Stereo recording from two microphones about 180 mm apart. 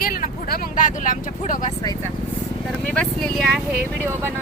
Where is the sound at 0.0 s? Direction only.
50° left (ahead or behind).